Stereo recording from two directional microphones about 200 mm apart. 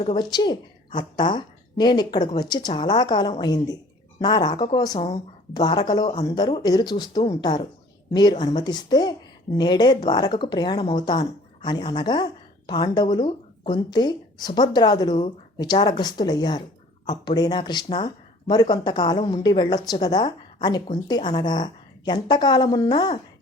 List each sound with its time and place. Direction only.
0.0 s a woman's voice: 25° left (ahead or behind)